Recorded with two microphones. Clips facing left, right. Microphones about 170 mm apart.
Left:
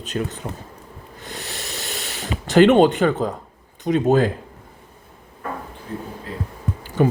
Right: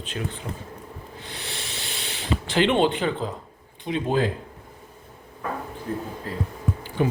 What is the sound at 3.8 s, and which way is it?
Speech, 45° left (ahead or behind).